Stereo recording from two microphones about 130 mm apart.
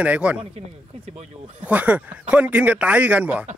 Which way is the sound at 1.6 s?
10° right (ahead or behind).